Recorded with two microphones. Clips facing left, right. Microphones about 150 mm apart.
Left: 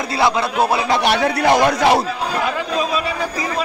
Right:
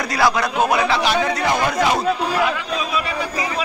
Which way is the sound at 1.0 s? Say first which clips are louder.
Left 3 dB; 65° left (ahead or behind).